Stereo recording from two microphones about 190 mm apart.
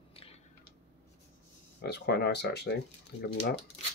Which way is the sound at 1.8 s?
60° left (ahead or behind).